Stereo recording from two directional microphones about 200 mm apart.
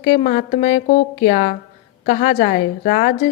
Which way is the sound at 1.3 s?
45° left (ahead or behind).